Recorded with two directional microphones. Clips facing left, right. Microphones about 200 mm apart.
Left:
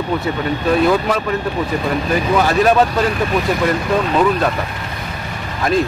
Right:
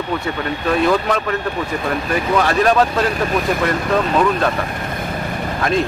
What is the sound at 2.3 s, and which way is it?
Speech, 5° left (ahead or behind).